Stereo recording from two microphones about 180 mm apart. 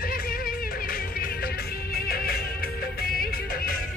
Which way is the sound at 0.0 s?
55° left (ahead or behind).